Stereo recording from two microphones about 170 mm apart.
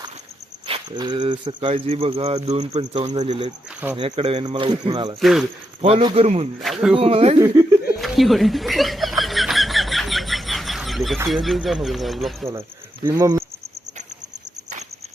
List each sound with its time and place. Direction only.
0.7 s speech: 25° right (ahead or behind)
3.9 s speech: 30° right (ahead or behind)
5.2 s speech: centre (ahead or behind)
5.8 s speech: 30° right (ahead or behind)
6.6 s speech: centre (ahead or behind)
6.9 s speech: 35° right (ahead or behind)
7.3 s speech: 15° right (ahead or behind)
7.9 s chuckle: centre (ahead or behind)
11.3 s speech: centre (ahead or behind)
13.1 s speech: 15° right (ahead or behind)